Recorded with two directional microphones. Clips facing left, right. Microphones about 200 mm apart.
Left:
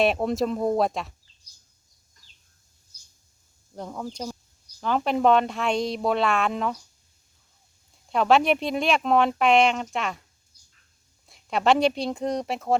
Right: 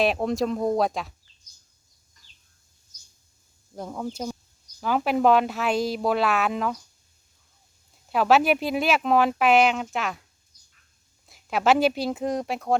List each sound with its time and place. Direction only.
0.0 s speech: centre (ahead or behind)
3.8 s speech: 5° right (ahead or behind)
8.1 s speech: 5° right (ahead or behind)
11.3 s speech: centre (ahead or behind)